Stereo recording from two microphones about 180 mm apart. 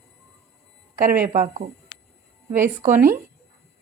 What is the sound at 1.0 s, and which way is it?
Speech, 50° right (ahead or behind).